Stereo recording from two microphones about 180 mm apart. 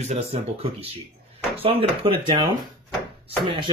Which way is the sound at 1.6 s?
30° right (ahead or behind).